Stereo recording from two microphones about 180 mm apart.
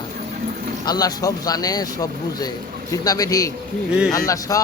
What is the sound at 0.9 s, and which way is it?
A man's voice, 20° left (ahead or behind).